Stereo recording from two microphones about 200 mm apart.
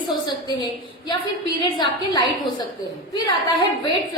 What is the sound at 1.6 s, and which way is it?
A woman's voice, 20° left (ahead or behind).